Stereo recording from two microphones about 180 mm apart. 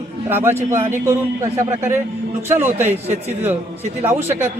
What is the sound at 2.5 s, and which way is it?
Speech, 10° right (ahead or behind).